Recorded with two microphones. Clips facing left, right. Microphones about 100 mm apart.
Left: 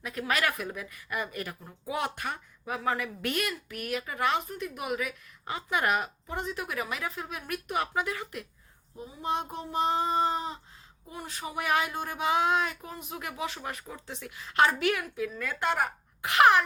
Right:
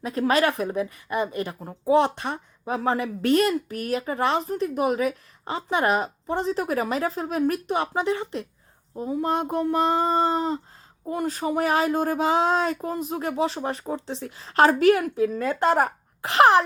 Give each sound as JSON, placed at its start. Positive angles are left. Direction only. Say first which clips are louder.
{"t": 0.0, "sound": "a woman's voice", "louder": "right 8 dB", "side_deg": -30}
{"t": 9.0, "sound": "a sound", "louder": "right 8 dB", "side_deg": -45}
{"t": 11.0, "sound": "a woman's voice", "louder": "right 13 dB", "side_deg": -50}